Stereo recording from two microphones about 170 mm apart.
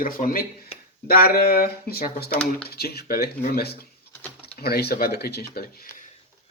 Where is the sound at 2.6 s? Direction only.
65° left (ahead or behind).